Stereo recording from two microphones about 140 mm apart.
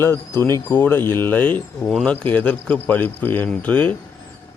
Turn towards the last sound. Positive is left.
turn(degrees=10)  # may be behind; listen again after turning